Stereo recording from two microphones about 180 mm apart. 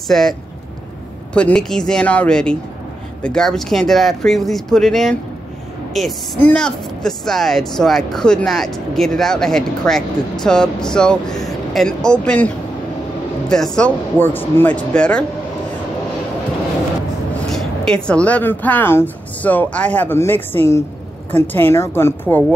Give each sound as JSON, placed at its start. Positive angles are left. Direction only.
{"t": 0.1, "sound": "a woman's voice", "side_deg": 0}
{"t": 1.3, "sound": "a woman's voice", "side_deg": 5}
{"t": 17.3, "sound": "speech", "side_deg": 5}